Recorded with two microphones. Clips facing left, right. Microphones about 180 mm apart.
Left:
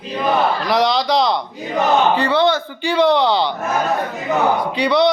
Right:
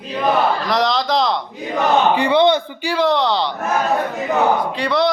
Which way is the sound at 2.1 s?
15° right (ahead or behind).